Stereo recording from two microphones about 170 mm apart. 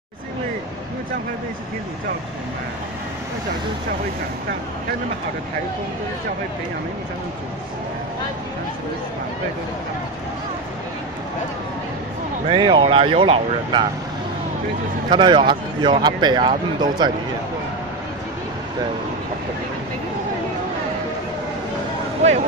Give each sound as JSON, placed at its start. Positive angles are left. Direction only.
{"t": 12.4, "sound": "speech", "side_deg": -30}
{"t": 15.0, "sound": "speech", "side_deg": -25}